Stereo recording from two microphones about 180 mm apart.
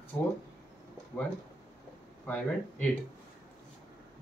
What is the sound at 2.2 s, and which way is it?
Speech, 5° left (ahead or behind).